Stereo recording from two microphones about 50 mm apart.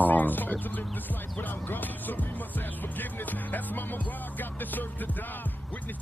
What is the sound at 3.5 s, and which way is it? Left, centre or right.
Music, left.